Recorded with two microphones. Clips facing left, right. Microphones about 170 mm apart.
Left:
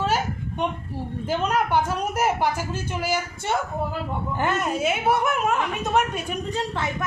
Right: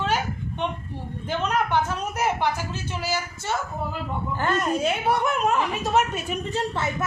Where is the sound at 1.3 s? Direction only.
10° left (ahead or behind).